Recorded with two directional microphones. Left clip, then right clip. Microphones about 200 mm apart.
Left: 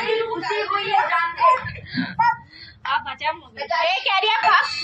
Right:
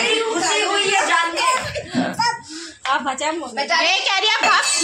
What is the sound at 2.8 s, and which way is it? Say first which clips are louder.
Speech: right 3 dB; 40° right (ahead or behind).